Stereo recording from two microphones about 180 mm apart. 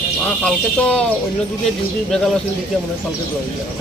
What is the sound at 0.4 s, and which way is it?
Speech, 5° left (ahead or behind).